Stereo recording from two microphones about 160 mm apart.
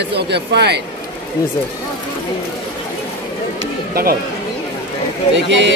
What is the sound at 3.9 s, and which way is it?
Speech, 70° right (ahead or behind).